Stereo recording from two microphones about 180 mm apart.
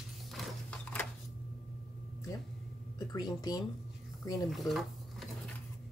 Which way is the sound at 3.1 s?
20° left (ahead or behind).